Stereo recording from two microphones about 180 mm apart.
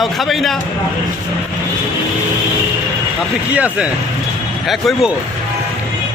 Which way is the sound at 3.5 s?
10° right (ahead or behind).